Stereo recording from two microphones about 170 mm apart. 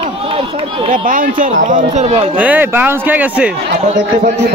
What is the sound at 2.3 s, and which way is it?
Speech, 10° right (ahead or behind).